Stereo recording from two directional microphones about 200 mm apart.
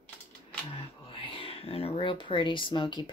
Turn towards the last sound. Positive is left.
turn(degrees=20)  # may be behind; listen again after turning